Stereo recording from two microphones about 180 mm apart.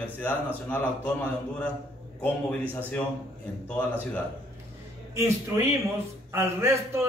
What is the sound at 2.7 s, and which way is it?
A man's voice, 10° left (ahead or behind).